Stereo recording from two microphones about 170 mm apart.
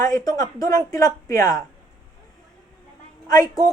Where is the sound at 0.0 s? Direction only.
20° left (ahead or behind).